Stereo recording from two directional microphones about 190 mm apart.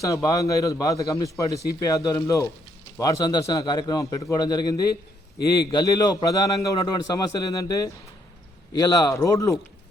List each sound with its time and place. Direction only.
0.0 s a man's voice: 20° left (ahead or behind)